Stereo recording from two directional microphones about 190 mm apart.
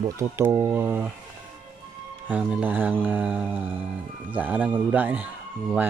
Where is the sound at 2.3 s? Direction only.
5° right (ahead or behind).